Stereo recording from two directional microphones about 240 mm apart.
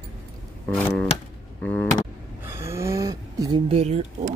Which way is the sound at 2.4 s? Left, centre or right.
Centre.